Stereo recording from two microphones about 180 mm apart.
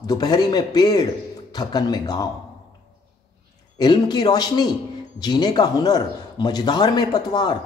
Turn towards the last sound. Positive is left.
turn(degrees=20)  # may be behind; listen again after turning